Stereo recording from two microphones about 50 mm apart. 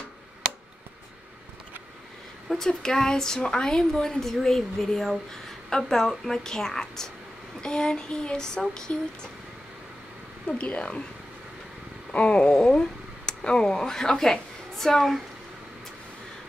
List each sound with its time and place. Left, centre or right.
2.5 s speech: centre
10.6 s speech: left
12.1 s speech: left; by 15.1 s centre